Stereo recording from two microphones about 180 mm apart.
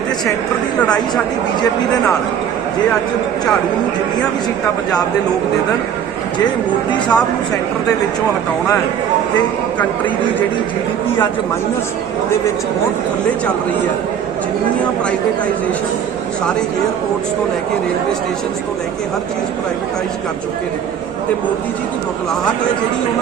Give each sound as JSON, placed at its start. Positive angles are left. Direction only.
{"t": 6.9, "sound": "speech", "side_deg": 20}